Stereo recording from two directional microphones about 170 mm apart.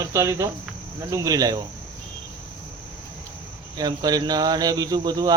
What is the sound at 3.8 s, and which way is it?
Speech, 25° right (ahead or behind).